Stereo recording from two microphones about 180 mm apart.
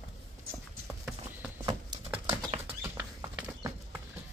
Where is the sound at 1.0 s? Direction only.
5° right (ahead or behind).